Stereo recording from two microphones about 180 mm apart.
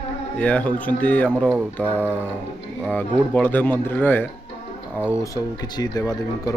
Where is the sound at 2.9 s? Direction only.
10° left (ahead or behind).